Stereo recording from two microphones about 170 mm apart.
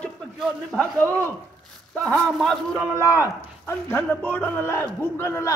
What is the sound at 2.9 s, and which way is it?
A man's voice, 15° left (ahead or behind).